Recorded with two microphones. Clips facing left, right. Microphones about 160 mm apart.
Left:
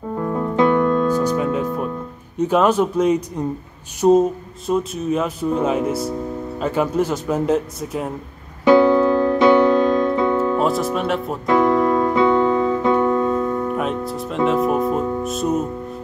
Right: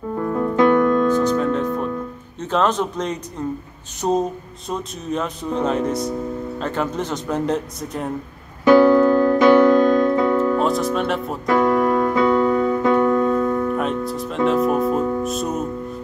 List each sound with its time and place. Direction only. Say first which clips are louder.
0.2 s music: right 1 dB; 20° left (ahead or behind)
2.3 s speech: left 4 dB; 10° left (ahead or behind)
8.6 s music: right 1 dB; 20° left (ahead or behind)
10.6 s speech: even; 5° left (ahead or behind)
11.4 s keyboard: left 1 dB; 25° left (ahead or behind)
13.7 s music: even; centre (ahead or behind)